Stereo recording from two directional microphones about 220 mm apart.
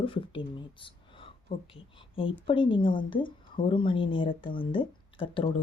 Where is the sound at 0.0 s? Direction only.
25° left (ahead or behind).